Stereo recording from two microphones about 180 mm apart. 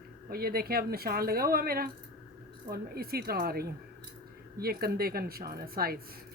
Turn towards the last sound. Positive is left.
turn(degrees=-55)  # may be behind; listen again after turning